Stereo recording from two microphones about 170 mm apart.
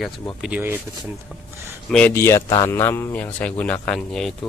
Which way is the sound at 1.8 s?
5° left (ahead or behind).